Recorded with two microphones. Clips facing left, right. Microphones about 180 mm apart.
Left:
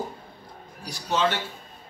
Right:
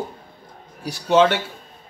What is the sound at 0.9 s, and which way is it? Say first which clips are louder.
Speech: right 9 dB; 75° right (ahead or behind).